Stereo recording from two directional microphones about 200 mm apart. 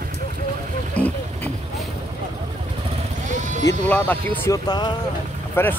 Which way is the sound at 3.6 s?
10° left (ahead or behind).